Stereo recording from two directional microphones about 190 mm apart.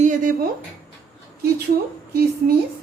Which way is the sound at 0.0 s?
45° right (ahead or behind).